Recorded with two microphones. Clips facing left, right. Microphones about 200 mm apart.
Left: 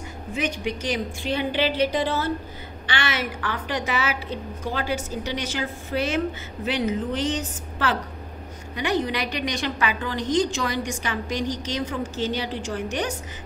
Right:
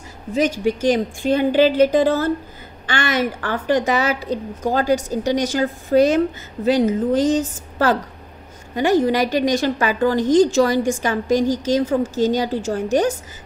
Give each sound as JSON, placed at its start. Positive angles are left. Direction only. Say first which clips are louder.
{"t": 0.8, "sound": "a woman's voice", "louder": "right 10 dB", "side_deg": -45}